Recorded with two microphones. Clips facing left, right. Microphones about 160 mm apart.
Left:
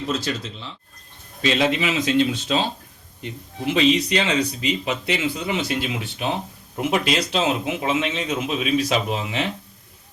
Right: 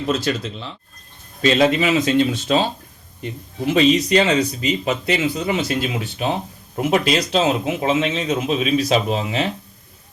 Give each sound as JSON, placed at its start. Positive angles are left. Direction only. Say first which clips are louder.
{"t": 0.1, "sound": "speech", "louder": "right 6 dB", "side_deg": -60}
{"t": 1.4, "sound": "a man's voice", "louder": "right 5 dB", "side_deg": -45}